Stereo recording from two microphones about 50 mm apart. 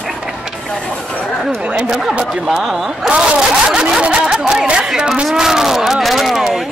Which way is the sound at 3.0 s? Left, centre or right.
Centre.